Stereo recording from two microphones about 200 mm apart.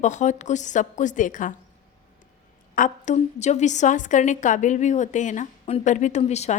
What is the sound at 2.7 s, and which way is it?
A woman's voice, 40° left (ahead or behind).